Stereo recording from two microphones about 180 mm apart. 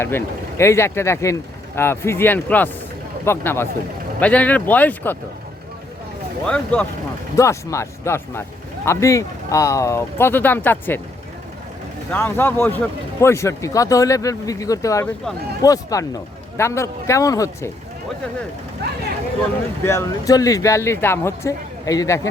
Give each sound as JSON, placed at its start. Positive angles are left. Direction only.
{"t": 0.0, "sound": "speech", "side_deg": 15}
{"t": 6.4, "sound": "speech", "side_deg": 5}
{"t": 12.1, "sound": "speech", "side_deg": 10}
{"t": 19.8, "sound": "speech", "side_deg": 15}